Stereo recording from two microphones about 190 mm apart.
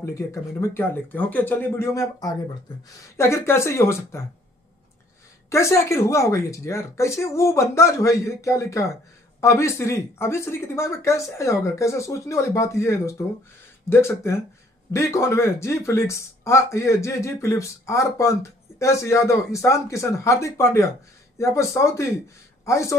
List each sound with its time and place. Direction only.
0.0 s speech: 15° left (ahead or behind)
5.5 s speech: 15° left (ahead or behind)